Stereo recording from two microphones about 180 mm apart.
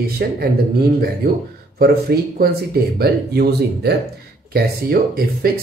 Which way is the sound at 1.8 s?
60° right (ahead or behind).